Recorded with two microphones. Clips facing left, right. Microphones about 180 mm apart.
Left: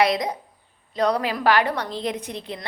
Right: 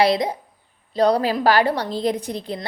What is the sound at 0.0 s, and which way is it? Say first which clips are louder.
A woman's voice: right 3 dB; 30° right (ahead or behind).